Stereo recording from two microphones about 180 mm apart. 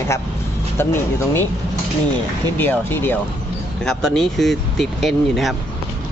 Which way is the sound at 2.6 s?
10° left (ahead or behind).